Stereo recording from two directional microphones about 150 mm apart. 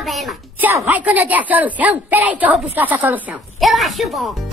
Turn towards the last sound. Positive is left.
turn(degrees=0)  # may be behind; listen again after turning